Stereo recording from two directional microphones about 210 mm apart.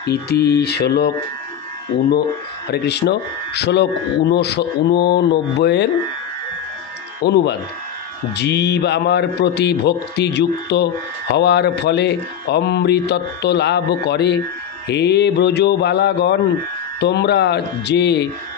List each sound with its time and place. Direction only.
0.1 s a man's voice: 50° left (ahead or behind)
2.7 s a man's voice: 50° left (ahead or behind)
7.2 s a man's voice: 50° left (ahead or behind)